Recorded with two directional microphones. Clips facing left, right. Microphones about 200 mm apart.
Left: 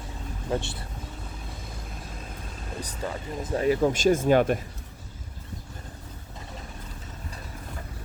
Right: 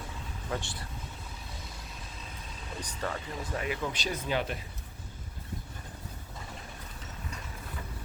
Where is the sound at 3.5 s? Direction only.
40° left (ahead or behind).